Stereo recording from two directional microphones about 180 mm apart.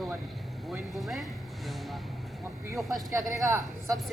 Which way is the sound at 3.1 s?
15° right (ahead or behind).